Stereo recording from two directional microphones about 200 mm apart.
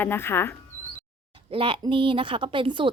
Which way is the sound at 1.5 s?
25° right (ahead or behind).